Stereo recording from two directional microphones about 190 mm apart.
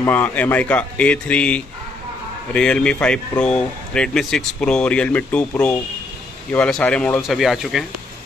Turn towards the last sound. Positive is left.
turn(degrees=0)  # may be behind; listen again after turning